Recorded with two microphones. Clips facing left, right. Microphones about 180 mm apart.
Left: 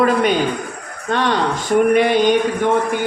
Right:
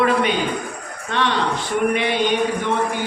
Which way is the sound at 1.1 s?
45° left (ahead or behind).